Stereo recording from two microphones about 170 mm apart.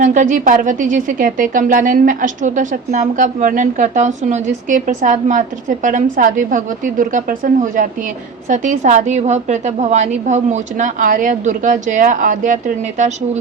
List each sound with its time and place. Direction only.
0.0 s a woman's voice: 45° right (ahead or behind)